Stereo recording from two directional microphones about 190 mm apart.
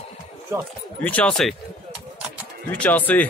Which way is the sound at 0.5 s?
15° right (ahead or behind).